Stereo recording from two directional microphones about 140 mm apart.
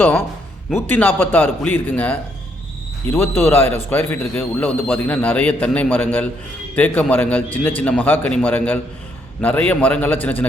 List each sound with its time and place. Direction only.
0.7 s a man's voice: 15° left (ahead or behind)